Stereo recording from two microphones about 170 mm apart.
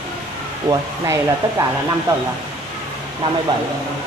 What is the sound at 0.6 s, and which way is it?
Speech, 20° right (ahead or behind).